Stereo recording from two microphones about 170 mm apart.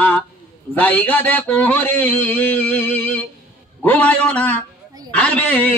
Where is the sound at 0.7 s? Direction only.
10° left (ahead or behind).